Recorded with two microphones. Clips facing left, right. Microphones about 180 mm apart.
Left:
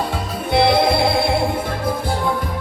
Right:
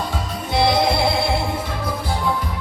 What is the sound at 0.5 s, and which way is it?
Music, 55° left (ahead or behind).